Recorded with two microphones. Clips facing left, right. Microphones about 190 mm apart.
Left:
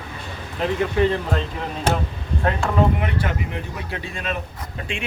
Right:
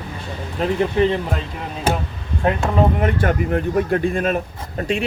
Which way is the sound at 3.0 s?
50° right (ahead or behind).